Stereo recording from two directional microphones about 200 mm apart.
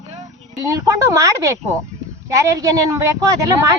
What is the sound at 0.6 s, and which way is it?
Speech, 15° right (ahead or behind).